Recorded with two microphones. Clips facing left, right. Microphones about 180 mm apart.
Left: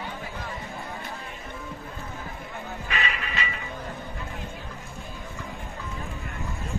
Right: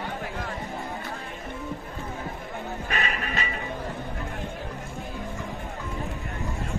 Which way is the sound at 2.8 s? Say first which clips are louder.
Right 1 dB; 45° right (ahead or behind).